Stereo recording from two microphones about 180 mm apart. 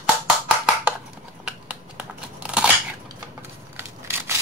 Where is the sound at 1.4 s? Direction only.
5° right (ahead or behind).